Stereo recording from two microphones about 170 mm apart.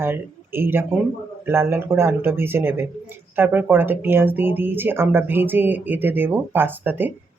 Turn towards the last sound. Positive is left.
turn(degrees=-10)  # may be behind; listen again after turning